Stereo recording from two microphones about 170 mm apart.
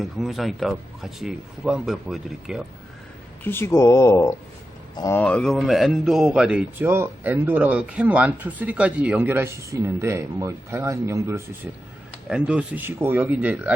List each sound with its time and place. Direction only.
0.0 s speech: centre (ahead or behind)
3.4 s speech: 15° left (ahead or behind)
5.2 s speech: 5° left (ahead or behind); by 11.4 s 15° right (ahead or behind)
12.3 s speech: 5° right (ahead or behind)